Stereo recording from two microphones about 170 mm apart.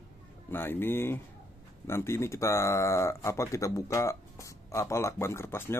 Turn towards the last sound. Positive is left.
turn(degrees=15)  # may be behind; listen again after turning